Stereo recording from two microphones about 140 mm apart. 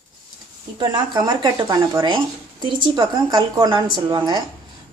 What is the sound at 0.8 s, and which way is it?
Speech, 30° right (ahead or behind).